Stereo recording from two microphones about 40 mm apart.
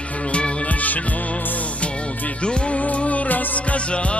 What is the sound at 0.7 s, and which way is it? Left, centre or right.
Music, left.